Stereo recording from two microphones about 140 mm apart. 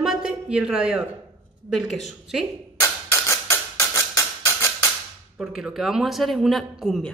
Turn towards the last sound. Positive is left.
turn(degrees=0)  # may be behind; listen again after turning